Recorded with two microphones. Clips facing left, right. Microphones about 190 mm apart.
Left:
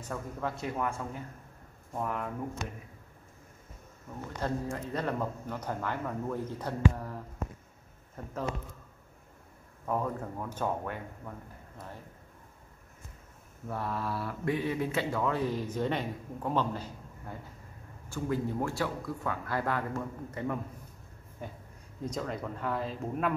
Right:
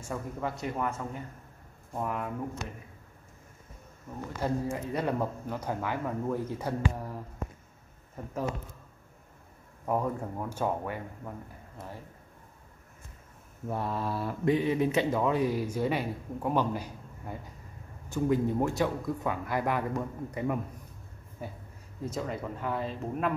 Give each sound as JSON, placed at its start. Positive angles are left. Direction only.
{"t": 0.0, "sound": "speech", "side_deg": -5}
{"t": 4.4, "sound": "speech", "side_deg": -10}
{"t": 9.8, "sound": "speech", "side_deg": -15}
{"t": 13.7, "sound": "speech", "side_deg": -20}